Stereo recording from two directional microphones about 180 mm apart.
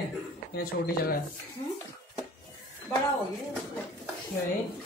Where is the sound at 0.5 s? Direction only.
60° left (ahead or behind).